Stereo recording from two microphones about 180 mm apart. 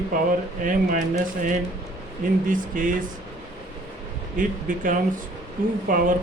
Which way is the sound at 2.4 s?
50° right (ahead or behind).